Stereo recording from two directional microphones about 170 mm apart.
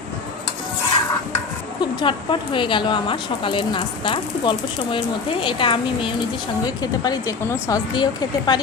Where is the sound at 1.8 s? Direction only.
25° left (ahead or behind).